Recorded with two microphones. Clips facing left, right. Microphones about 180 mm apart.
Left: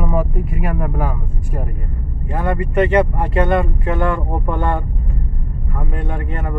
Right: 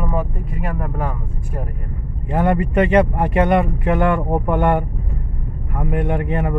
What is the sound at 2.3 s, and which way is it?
Speech, 20° right (ahead or behind).